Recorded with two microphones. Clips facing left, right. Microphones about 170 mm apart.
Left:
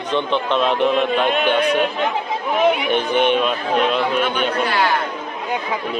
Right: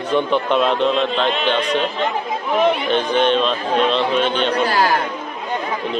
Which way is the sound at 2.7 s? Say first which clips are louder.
Even; 10° left (ahead or behind).